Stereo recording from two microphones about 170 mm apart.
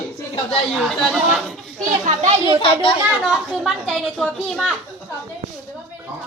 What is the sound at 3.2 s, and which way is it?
Speech, 5° right (ahead or behind).